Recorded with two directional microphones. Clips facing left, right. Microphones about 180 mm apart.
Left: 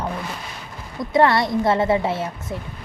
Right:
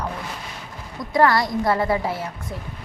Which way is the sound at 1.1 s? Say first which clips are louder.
Left 1 dB; 25° left (ahead or behind).